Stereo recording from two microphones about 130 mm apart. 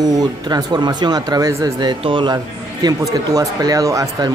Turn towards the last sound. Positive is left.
turn(degrees=-25)  # may be behind; listen again after turning